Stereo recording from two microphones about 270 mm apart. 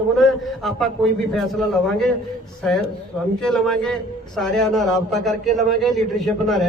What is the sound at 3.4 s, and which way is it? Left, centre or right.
A man's voice, centre.